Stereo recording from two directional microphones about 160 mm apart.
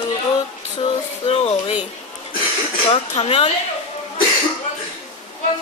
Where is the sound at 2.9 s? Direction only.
35° left (ahead or behind).